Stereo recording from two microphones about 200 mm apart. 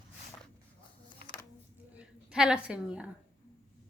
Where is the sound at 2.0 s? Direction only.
5° right (ahead or behind).